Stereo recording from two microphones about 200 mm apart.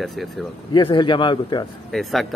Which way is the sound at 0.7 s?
25° left (ahead or behind).